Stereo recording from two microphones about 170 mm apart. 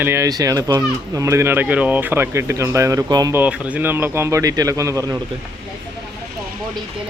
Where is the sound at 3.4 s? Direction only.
10° right (ahead or behind).